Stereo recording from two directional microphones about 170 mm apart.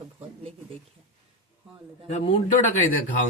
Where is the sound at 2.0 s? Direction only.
40° left (ahead or behind).